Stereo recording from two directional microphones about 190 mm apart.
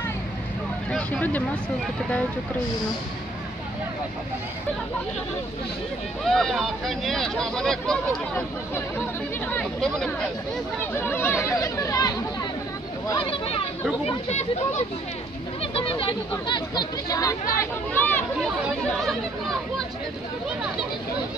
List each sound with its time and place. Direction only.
0.9 s speech: 5° left (ahead or behind)
6.2 s speech: centre (ahead or behind); by 12.2 s 20° left (ahead or behind)
13.1 s speech: 30° left (ahead or behind); by 18.2 s 10° left (ahead or behind)